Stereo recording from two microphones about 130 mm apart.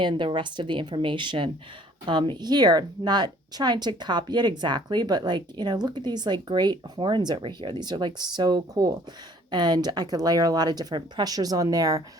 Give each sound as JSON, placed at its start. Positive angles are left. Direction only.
{"t": 0.0, "sound": "a woman's voice", "side_deg": -35}